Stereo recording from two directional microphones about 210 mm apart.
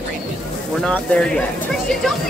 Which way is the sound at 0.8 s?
5° left (ahead or behind).